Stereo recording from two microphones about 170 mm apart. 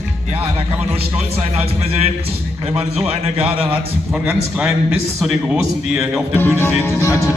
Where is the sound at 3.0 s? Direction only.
35° right (ahead or behind).